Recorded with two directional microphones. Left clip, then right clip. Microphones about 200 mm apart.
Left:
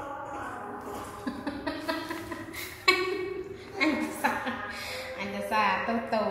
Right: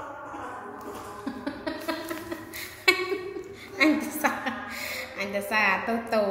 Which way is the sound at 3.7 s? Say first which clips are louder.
Right 5 dB; 40° right (ahead or behind).